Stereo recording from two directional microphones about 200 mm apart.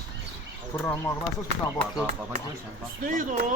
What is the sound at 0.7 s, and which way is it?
Speech, 10° left (ahead or behind).